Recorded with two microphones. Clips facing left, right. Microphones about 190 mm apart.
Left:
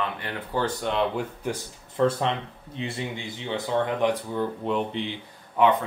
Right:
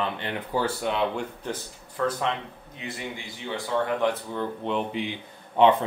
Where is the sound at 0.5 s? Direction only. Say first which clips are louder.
Left 1 dB; 5° right (ahead or behind).